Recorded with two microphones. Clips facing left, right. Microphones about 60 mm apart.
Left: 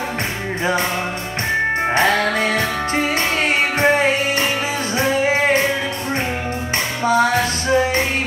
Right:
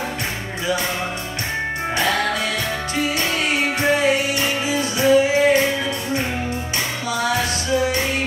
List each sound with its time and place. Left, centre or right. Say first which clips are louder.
2.0 s music: left 2 dB; left
7.1 s music: left 6 dB; left